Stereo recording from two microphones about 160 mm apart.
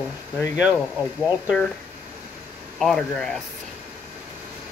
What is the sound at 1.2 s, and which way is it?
Speech, centre (ahead or behind).